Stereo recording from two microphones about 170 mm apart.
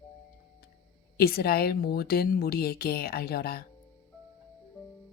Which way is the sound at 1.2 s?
65° left (ahead or behind).